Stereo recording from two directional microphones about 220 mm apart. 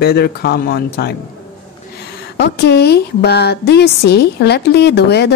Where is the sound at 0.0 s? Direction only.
45° left (ahead or behind).